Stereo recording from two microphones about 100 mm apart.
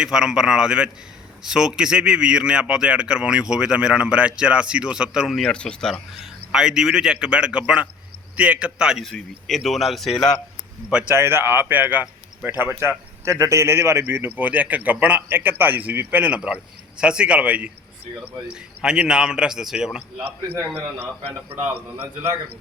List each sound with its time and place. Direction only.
0.0 s speech: 5° right (ahead or behind)
6.1 s speech: 5° right (ahead or behind)
9.0 s speech: 5° left (ahead or behind)
11.1 s speech: 25° right (ahead or behind); by 20.2 s 5° right (ahead or behind)
21.7 s speech: 20° right (ahead or behind)